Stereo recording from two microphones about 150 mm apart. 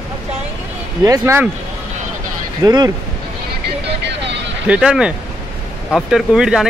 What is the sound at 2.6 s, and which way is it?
Speech, 25° right (ahead or behind).